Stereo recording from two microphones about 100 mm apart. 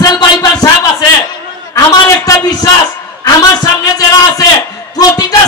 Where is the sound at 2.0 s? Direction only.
35° left (ahead or behind).